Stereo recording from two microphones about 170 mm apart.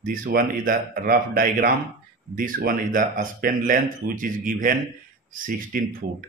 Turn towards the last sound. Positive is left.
turn(degrees=-60)  # may be behind; listen again after turning